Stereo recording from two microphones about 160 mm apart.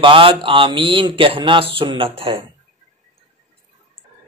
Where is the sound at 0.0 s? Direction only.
35° right (ahead or behind).